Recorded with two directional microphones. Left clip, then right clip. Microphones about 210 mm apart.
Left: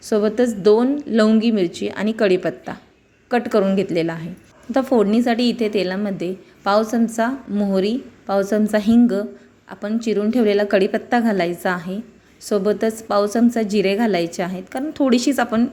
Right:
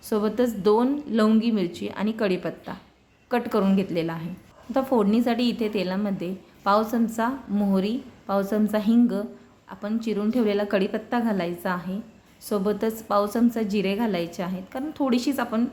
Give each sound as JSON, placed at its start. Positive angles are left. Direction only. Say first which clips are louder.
{"t": 0.0, "sound": "a woman's voice", "louder": "left 6 dB", "side_deg": 10}